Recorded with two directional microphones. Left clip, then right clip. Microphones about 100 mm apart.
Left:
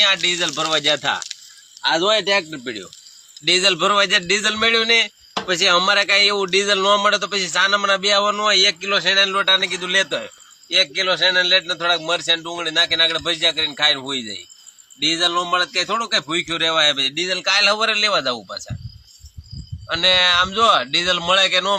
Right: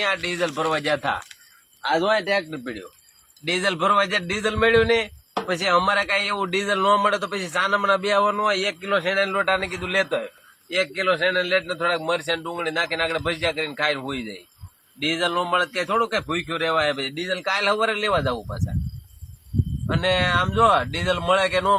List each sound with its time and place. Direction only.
0.0 s a man's voice: 15° right (ahead or behind); by 6.1 s 5° left (ahead or behind)
6.1 s a man's voice: 5° right (ahead or behind)
9.1 s a man's voice: 25° right (ahead or behind); by 18.5 s centre (ahead or behind)
19.9 s speech: centre (ahead or behind)